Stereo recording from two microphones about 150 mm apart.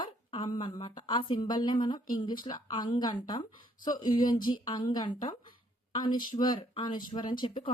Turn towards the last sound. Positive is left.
turn(degrees=35)  # may be behind; listen again after turning